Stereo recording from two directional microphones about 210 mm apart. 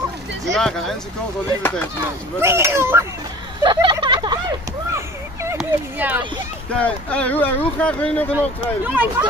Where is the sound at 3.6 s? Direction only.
20° right (ahead or behind).